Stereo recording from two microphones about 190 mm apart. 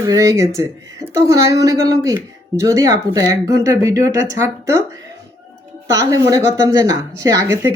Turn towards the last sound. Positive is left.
turn(degrees=-15)  # may be behind; listen again after turning